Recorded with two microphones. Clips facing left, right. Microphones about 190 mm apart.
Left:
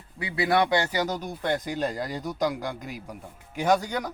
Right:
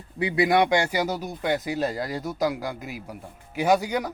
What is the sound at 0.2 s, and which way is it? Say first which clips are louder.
Speech: right 3 dB; 20° right (ahead or behind).